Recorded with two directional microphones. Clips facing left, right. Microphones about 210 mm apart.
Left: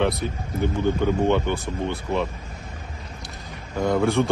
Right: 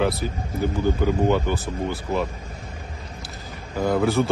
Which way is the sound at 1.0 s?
5° right (ahead or behind).